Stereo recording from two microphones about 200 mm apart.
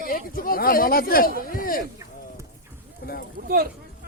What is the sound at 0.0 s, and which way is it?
Speech, 45° left (ahead or behind).